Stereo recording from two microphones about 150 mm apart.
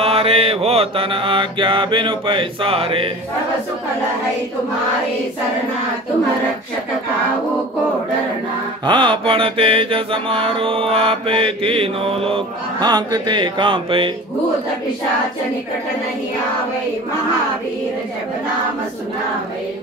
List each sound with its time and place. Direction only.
0.0 s mantra: 40° right (ahead or behind)
8.8 s mantra: 35° right (ahead or behind)